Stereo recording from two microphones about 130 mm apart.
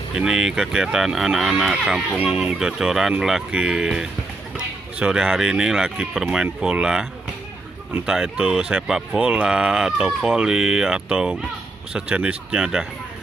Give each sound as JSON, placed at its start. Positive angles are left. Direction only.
{"t": 0.1, "sound": "speech", "side_deg": -5}